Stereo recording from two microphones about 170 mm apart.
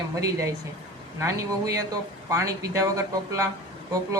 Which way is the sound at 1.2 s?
20° right (ahead or behind).